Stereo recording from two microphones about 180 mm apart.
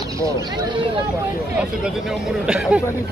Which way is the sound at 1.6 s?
5° right (ahead or behind).